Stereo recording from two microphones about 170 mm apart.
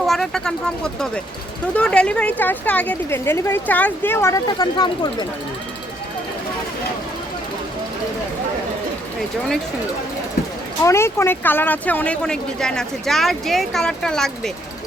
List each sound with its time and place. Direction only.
0.0 s a woman's voice: centre (ahead or behind); by 5.1 s 20° left (ahead or behind)
10.8 s speech: 15° left (ahead or behind)